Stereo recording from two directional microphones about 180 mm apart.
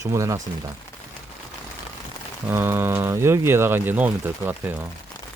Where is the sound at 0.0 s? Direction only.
15° right (ahead or behind).